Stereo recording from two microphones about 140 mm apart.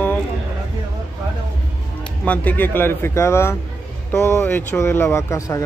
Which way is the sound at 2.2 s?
10° left (ahead or behind).